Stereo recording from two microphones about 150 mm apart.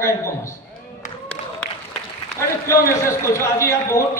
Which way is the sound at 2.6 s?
20° left (ahead or behind).